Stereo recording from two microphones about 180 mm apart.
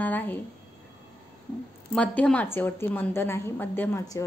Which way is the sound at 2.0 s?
5° left (ahead or behind).